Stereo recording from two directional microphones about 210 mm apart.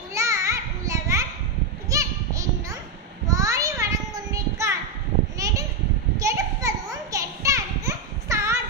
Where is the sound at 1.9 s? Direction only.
15° right (ahead or behind).